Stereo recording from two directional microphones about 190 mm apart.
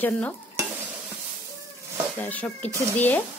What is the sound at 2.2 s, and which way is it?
Speech, 10° left (ahead or behind).